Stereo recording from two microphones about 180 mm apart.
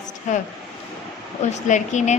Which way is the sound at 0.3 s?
40° left (ahead or behind).